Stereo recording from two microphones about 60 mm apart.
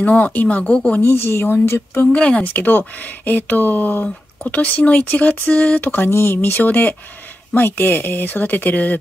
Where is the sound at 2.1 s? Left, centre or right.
Centre.